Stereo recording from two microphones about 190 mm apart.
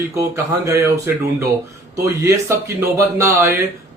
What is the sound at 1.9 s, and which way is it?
Speech, 15° right (ahead or behind).